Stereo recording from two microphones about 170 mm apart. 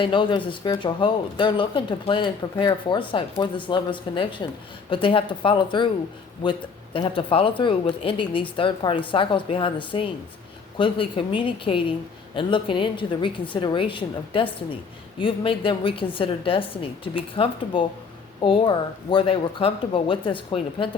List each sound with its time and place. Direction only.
0.0 s speech: 30° left (ahead or behind)
6.9 s a woman's voice: 30° left (ahead or behind)